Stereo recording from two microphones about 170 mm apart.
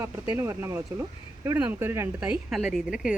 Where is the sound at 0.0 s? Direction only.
15° right (ahead or behind).